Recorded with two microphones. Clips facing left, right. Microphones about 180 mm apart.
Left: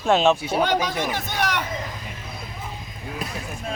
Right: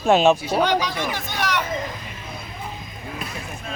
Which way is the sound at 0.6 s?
50° left (ahead or behind).